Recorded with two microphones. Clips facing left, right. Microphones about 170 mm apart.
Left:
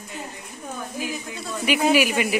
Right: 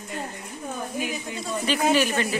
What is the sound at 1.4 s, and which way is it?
Speech, 10° left (ahead or behind).